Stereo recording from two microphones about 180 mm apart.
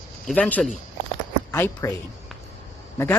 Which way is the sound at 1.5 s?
15° left (ahead or behind).